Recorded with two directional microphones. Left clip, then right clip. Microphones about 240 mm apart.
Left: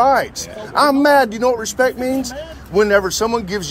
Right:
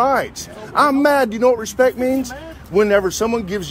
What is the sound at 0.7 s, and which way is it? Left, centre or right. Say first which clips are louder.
Speech: left 2 dB; centre.